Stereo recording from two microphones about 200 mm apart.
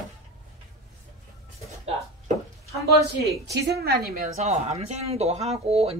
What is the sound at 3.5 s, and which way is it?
Speech, 55° right (ahead or behind).